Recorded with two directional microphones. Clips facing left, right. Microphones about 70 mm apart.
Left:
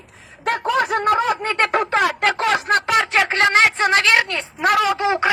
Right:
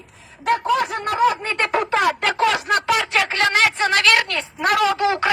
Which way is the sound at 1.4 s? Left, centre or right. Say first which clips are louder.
Left 2 dB; left.